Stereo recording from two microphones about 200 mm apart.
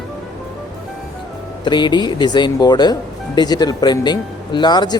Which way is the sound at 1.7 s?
20° left (ahead or behind).